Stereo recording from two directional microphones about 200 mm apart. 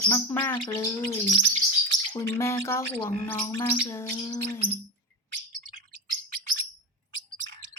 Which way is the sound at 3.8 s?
10° left (ahead or behind).